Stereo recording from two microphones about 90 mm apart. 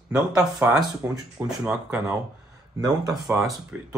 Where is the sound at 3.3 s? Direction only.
20° right (ahead or behind).